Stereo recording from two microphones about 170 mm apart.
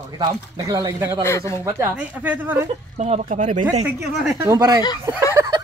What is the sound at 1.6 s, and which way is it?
Speech, 15° right (ahead or behind).